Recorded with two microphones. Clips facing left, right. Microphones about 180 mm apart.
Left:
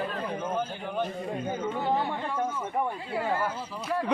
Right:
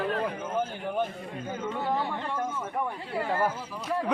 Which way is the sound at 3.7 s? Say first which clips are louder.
Even; centre (ahead or behind).